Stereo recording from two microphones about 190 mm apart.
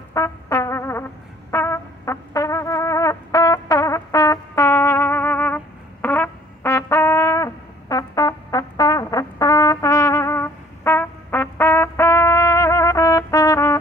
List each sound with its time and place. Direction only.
0.1 s brass instrument: 15° left (ahead or behind)
6.0 s music: 10° left (ahead or behind)